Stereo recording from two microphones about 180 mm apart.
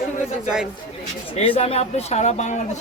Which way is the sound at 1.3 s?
35° left (ahead or behind).